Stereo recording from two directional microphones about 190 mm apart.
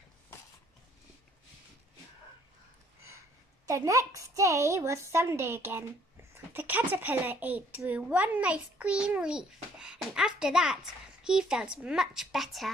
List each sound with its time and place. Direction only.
3.6 s a woman's voice: 15° right (ahead or behind); by 12.7 s centre (ahead or behind)